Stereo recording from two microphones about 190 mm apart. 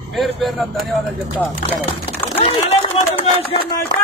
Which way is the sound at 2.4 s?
30° left (ahead or behind).